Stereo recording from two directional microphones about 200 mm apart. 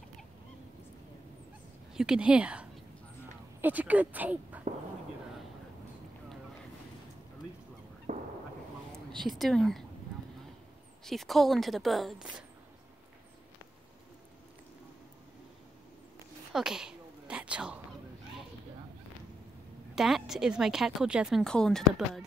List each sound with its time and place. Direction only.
2.0 s speech: 5° right (ahead or behind)
8.1 s a sound: 40° right (ahead or behind)
8.9 s speech: centre (ahead or behind)
11.1 s a woman's voice: centre (ahead or behind)
16.5 s a sound: 5° right (ahead or behind)
20.0 s a woman's voice: centre (ahead or behind)